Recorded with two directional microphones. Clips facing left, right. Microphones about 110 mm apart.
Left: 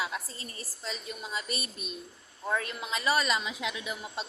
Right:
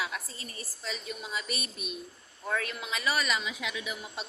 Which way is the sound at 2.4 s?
25° left (ahead or behind).